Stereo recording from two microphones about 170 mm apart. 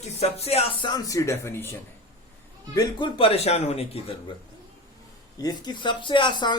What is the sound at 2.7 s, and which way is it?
A man's voice, 25° left (ahead or behind).